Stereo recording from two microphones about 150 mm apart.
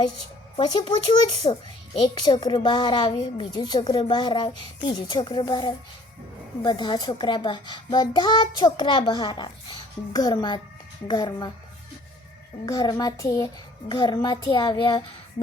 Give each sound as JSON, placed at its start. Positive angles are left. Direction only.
{"t": 0.5, "sound": "a woman's voice", "side_deg": 30}
{"t": 12.6, "sound": "a woman's voice", "side_deg": 25}